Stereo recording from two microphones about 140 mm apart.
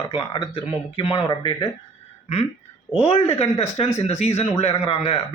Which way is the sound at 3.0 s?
45° left (ahead or behind).